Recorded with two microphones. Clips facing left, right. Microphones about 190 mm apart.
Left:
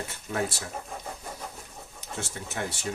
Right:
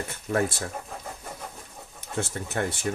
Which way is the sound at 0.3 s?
50° right (ahead or behind).